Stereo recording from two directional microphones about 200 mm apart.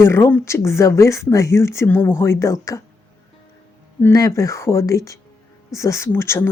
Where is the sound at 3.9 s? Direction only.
15° left (ahead or behind).